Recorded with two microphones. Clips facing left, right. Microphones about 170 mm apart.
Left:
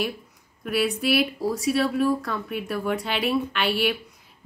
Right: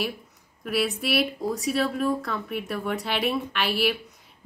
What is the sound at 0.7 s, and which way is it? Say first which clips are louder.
Speech: left 3 dB; centre (ahead or behind).